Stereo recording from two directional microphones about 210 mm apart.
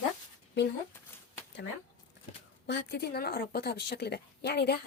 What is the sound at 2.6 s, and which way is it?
A woman's voice, 50° left (ahead or behind).